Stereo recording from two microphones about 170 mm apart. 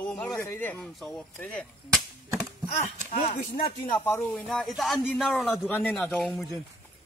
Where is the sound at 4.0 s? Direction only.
10° left (ahead or behind).